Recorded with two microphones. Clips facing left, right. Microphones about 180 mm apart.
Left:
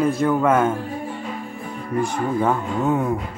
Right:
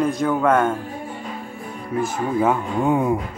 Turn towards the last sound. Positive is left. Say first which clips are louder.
# right 1 dB
turn(degrees=-15)  # may be behind; listen again after turning